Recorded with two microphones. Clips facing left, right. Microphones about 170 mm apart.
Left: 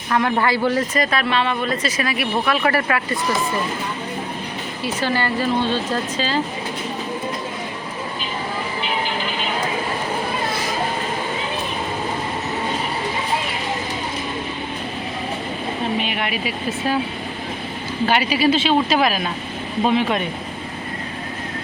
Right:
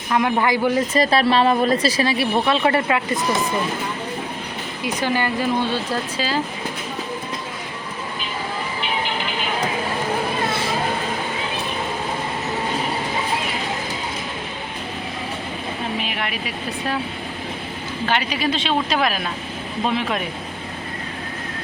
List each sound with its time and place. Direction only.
0.1 s speech: 15° right (ahead or behind)
0.9 s speech: 35° right (ahead or behind)
4.8 s speech: 15° right (ahead or behind)
16.0 s a sound: centre (ahead or behind)
18.1 s speech: 10° left (ahead or behind)